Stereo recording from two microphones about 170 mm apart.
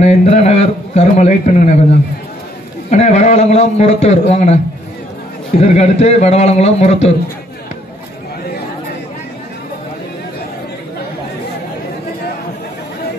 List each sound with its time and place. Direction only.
0.0 s a man's voice: 40° left (ahead or behind)
2.9 s a man's voice: 40° left (ahead or behind)
5.6 s a man's voice: 40° left (ahead or behind)